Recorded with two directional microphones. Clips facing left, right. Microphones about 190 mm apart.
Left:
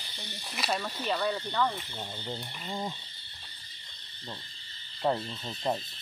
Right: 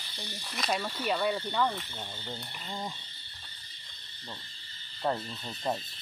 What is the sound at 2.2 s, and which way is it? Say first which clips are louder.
Speech: left 3 dB; 10° left (ahead or behind).